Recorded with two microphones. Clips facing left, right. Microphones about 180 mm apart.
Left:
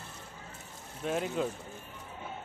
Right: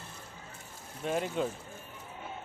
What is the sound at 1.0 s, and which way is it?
Speech, centre (ahead or behind).